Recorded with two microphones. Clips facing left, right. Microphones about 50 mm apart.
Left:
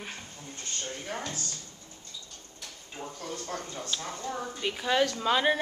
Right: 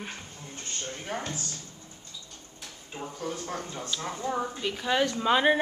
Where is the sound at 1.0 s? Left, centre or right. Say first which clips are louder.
Right 4 dB; right.